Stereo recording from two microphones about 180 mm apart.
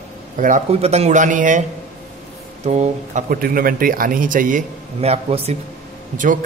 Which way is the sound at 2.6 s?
40° right (ahead or behind).